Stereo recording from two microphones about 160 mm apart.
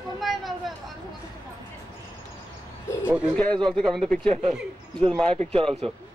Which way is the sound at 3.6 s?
5° left (ahead or behind).